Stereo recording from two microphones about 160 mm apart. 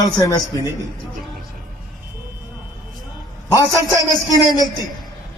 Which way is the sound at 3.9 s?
25° left (ahead or behind).